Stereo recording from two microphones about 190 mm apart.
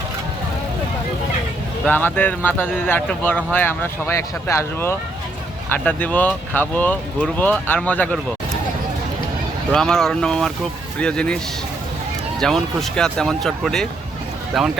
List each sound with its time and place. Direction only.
1.8 s speech: 10° left (ahead or behind)
9.7 s speech: centre (ahead or behind)
12.4 s speech: centre (ahead or behind)